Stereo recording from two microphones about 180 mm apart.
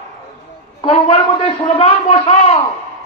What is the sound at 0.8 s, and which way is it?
A man's voice, 30° left (ahead or behind).